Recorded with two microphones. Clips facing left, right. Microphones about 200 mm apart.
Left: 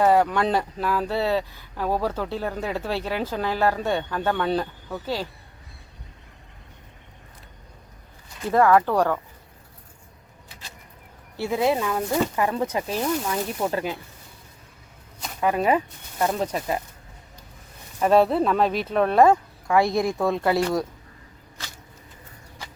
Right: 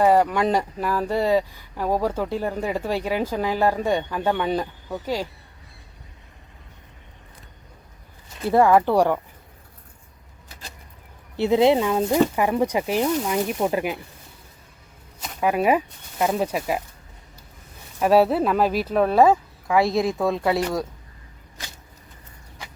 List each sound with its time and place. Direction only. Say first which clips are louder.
0.0 s speech: right 1 dB; 10° right (ahead or behind)
8.4 s speech: right 2 dB; 15° right (ahead or behind)
11.3 s speech: right 5 dB; 20° right (ahead or behind)
15.4 s speech: right 1 dB; 10° right (ahead or behind)
18.0 s speech: right 1 dB; 5° right (ahead or behind)